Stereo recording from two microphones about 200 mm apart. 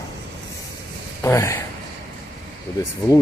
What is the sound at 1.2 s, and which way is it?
Speech, 15° left (ahead or behind).